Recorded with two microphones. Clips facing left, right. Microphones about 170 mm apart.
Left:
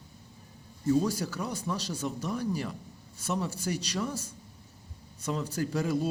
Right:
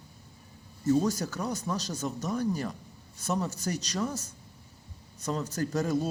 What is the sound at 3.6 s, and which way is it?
Speech, 5° left (ahead or behind).